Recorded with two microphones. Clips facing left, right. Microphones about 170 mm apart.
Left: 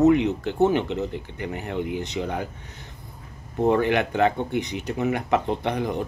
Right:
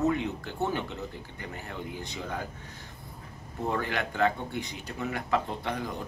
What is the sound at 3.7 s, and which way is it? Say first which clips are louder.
Speech: left 10 dB; 20° left (ahead or behind).